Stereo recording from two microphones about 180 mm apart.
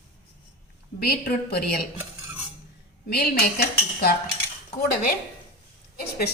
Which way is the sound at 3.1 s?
60° left (ahead or behind).